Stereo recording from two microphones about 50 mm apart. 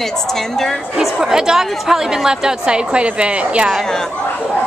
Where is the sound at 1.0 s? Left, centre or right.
Centre; by 3.6 s right.